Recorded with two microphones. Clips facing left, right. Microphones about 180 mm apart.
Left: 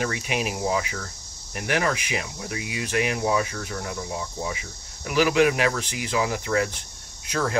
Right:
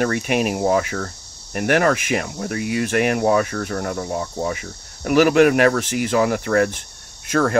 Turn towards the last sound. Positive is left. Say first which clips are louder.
# right 7 dB
turn(degrees=-55)  # may be behind; listen again after turning